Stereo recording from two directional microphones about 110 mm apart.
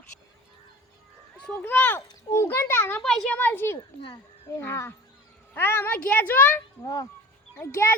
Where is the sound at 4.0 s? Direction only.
50° left (ahead or behind).